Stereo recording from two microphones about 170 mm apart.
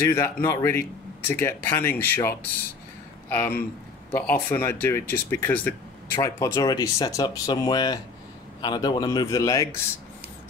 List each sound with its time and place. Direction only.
0.1 s speech: 15° left (ahead or behind)